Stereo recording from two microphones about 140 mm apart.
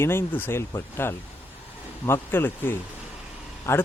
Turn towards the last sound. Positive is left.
turn(degrees=20)  # may be behind; listen again after turning